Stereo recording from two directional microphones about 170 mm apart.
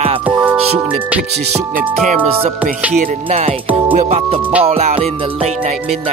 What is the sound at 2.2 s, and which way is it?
Speech, 35° right (ahead or behind).